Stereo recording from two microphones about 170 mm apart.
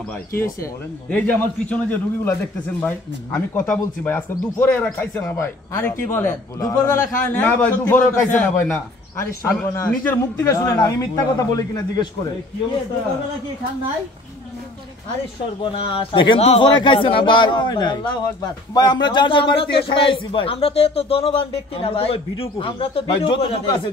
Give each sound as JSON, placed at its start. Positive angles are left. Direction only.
{"t": 1.1, "sound": "a man's voice", "side_deg": 10}
{"t": 15.6, "sound": "a man's voice", "side_deg": 30}